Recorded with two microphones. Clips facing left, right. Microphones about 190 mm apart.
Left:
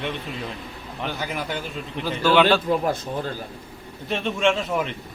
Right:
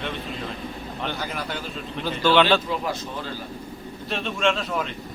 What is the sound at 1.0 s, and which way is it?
A man's voice, 5° left (ahead or behind).